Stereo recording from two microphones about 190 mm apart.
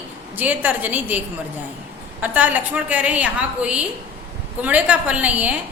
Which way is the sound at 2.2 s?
10° right (ahead or behind).